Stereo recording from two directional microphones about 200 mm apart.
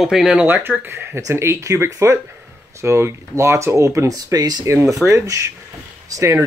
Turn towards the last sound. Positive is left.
turn(degrees=-15)  # may be behind; listen again after turning